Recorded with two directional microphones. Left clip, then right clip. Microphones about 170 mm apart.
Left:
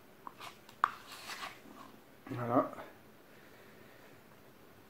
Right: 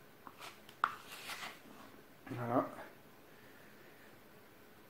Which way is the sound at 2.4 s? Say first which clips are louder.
Left 4 dB; 10° right (ahead or behind).